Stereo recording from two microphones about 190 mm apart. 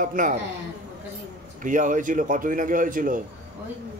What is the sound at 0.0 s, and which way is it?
Speech, 45° right (ahead or behind).